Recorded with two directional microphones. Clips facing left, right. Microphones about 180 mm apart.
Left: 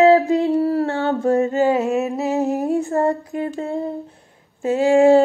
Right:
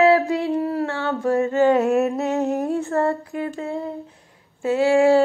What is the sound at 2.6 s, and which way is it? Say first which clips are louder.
Female singing: left 2 dB; 15° left (ahead or behind).